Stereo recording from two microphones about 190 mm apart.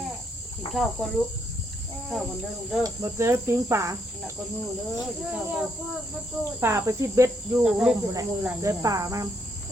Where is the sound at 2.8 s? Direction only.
15° right (ahead or behind).